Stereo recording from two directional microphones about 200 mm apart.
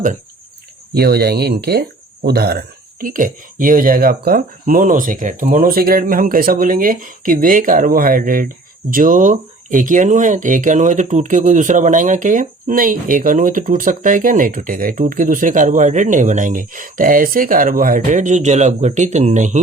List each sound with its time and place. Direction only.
0.9 s speech: 50° right (ahead or behind)